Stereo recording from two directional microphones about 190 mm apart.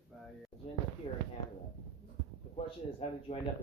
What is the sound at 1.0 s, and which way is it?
Speech, 30° left (ahead or behind).